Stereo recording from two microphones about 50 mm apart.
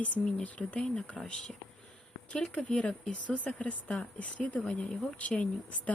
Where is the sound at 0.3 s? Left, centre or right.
Left.